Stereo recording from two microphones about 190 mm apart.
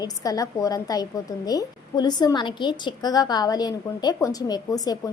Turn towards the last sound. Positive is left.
turn(degrees=20)  # may be behind; listen again after turning